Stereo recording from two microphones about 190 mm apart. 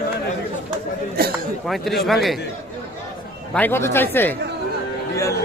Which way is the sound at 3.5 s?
10° left (ahead or behind).